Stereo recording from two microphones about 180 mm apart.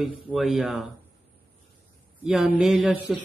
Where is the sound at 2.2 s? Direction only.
5° right (ahead or behind).